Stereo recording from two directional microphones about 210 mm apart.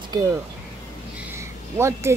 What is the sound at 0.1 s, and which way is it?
Speech, 20° right (ahead or behind).